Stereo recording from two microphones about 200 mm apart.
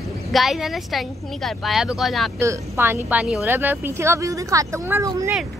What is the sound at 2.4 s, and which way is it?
Speech, 10° right (ahead or behind).